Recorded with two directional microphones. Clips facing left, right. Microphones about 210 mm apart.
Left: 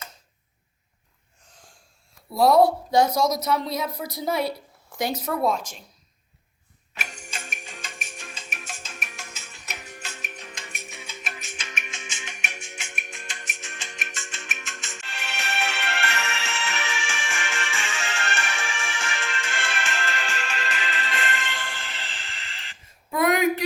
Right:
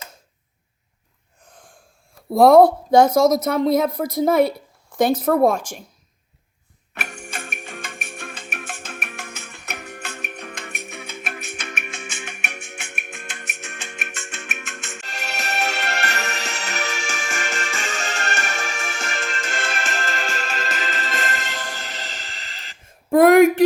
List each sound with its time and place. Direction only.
2.3 s speech: 50° right (ahead or behind)
6.9 s music: 60° right (ahead or behind)
15.0 s music: 40° right (ahead or behind)